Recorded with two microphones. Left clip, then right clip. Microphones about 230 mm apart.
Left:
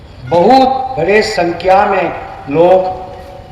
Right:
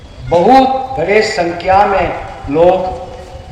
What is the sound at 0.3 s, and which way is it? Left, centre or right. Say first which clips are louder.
A man's voice: even; left.